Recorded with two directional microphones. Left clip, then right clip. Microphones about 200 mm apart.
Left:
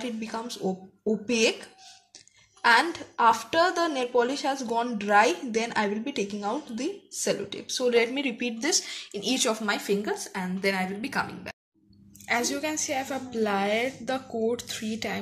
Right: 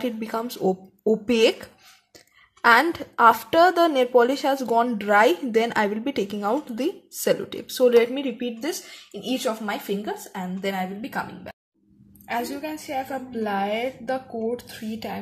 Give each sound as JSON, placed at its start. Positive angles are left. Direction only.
{"t": 0.0, "sound": "a woman's voice", "side_deg": -35}
{"t": 12.3, "sound": "a woman's voice", "side_deg": 5}